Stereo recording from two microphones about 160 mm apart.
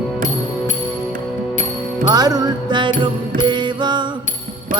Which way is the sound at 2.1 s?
25° right (ahead or behind).